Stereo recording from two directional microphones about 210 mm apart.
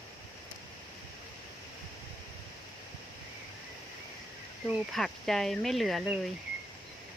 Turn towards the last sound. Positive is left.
turn(degrees=0)  # may be behind; listen again after turning